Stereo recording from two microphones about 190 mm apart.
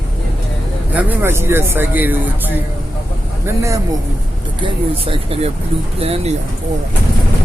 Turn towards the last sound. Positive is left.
turn(degrees=-30)  # may be behind; listen again after turning